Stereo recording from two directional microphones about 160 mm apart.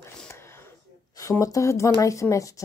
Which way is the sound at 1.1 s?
20° left (ahead or behind).